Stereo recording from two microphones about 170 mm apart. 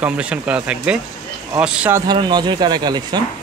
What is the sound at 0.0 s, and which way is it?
Speech, 5° right (ahead or behind).